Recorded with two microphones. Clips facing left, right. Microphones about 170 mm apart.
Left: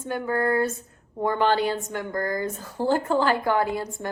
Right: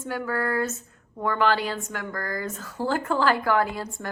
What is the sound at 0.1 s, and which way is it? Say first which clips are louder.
A woman's voice: left 3 dB; 25° left (ahead or behind).